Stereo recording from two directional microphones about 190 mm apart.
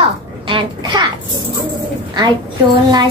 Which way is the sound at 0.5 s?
25° right (ahead or behind).